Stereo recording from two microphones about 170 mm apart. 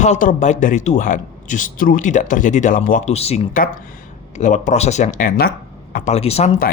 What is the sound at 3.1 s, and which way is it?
Speech, 40° left (ahead or behind).